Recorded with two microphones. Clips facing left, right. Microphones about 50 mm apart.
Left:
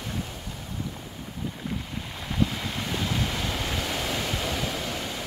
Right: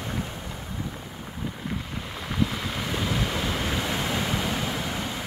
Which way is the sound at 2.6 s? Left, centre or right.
Centre.